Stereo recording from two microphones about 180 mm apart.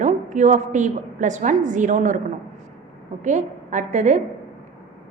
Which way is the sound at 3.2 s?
40° right (ahead or behind).